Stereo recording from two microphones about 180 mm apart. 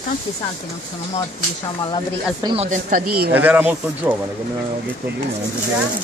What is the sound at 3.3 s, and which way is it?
Speech, 10° right (ahead or behind).